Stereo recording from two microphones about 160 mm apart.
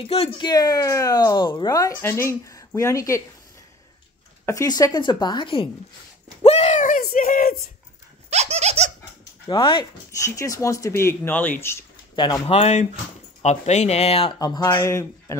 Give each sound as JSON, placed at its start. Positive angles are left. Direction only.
{"t": 0.0, "sound": "speech", "side_deg": 40}
{"t": 0.4, "sound": "speech", "side_deg": 25}
{"t": 4.5, "sound": "speech", "side_deg": 20}
{"t": 6.4, "sound": "a sound", "side_deg": 40}
{"t": 7.2, "sound": "speech", "side_deg": 60}
{"t": 8.3, "sound": "a sound", "side_deg": -45}
{"t": 9.5, "sound": "speech", "side_deg": 30}
{"t": 10.2, "sound": "speech", "side_deg": 20}
{"t": 12.2, "sound": "speech", "side_deg": 35}
{"t": 14.4, "sound": "speech", "side_deg": 25}